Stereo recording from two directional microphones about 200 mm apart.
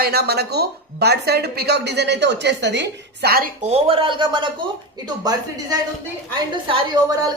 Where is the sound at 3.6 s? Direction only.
30° right (ahead or behind).